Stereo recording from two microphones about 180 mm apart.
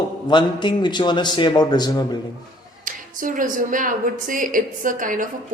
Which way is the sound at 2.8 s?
50° right (ahead or behind).